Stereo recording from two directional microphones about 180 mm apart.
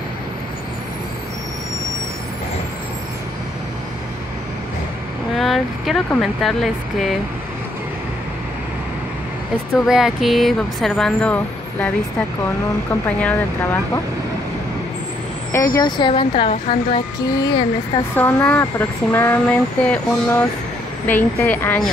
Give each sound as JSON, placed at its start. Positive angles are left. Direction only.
{"t": 5.4, "sound": "speech", "side_deg": 0}
{"t": 9.8, "sound": "speech", "side_deg": -5}
{"t": 13.2, "sound": "speech", "side_deg": 10}
{"t": 15.5, "sound": "speech", "side_deg": 15}
{"t": 18.1, "sound": "speech", "side_deg": 10}